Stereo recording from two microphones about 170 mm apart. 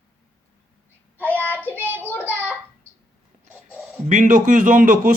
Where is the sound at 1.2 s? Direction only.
10° left (ahead or behind).